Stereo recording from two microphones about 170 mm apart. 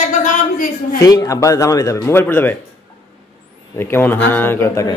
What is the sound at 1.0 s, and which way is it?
A man's voice, 15° left (ahead or behind).